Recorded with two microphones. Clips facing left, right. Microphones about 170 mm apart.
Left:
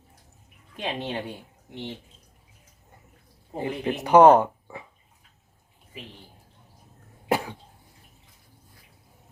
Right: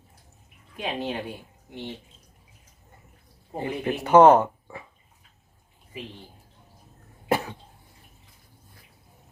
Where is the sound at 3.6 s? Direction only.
15° left (ahead or behind).